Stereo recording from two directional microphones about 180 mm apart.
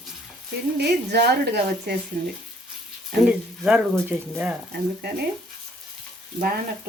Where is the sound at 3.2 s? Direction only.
5° right (ahead or behind).